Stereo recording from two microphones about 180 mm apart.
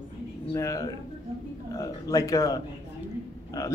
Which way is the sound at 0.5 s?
15° left (ahead or behind).